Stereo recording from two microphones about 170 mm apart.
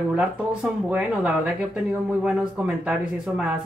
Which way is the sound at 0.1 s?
5° right (ahead or behind).